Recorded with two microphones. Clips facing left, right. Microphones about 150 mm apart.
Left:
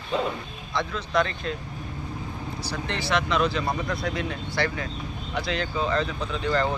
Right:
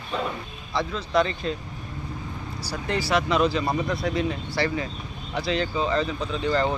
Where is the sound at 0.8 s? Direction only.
5° right (ahead or behind).